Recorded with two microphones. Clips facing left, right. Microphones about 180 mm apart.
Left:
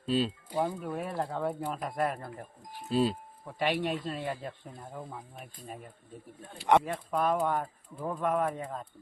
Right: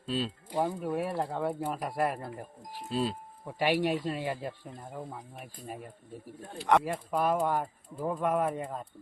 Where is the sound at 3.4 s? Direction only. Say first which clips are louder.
Right 3 dB; 10° right (ahead or behind).